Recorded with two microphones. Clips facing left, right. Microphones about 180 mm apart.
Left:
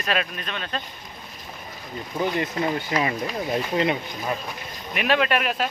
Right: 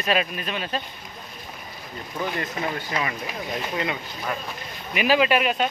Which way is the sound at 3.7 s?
25° left (ahead or behind).